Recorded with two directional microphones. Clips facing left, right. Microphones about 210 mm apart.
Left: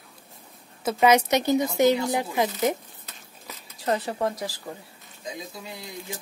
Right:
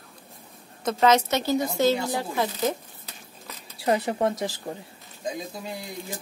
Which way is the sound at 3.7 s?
10° right (ahead or behind).